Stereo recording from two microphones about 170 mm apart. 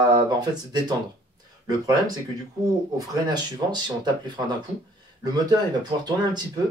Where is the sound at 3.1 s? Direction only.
25° right (ahead or behind).